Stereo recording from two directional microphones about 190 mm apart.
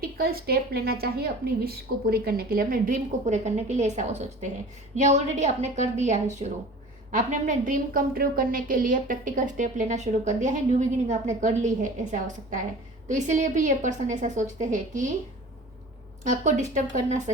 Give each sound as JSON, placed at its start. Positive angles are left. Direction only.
{"t": 0.0, "sound": "a woman's voice", "side_deg": -50}
{"t": 16.2, "sound": "a woman's voice", "side_deg": -40}